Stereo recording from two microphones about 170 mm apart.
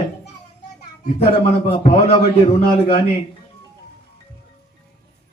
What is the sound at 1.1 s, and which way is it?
A man's voice, 35° left (ahead or behind).